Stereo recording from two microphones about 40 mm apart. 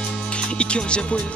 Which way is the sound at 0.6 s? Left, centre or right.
Left.